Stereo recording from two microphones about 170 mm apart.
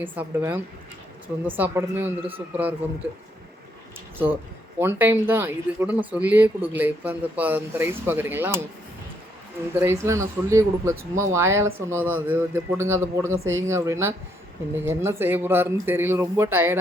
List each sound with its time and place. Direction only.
0.0 s speech: 10° right (ahead or behind)
4.8 s speech: 10° right (ahead or behind)
9.7 s speech: 15° right (ahead or behind)